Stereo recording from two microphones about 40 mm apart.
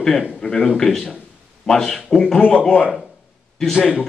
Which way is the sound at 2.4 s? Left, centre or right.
Left.